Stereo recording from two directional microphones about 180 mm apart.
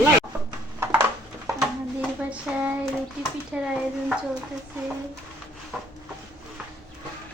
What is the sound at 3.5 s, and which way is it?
Speech, 5° right (ahead or behind).